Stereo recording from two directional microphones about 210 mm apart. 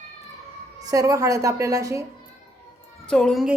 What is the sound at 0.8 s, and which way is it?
Speech, 15° right (ahead or behind).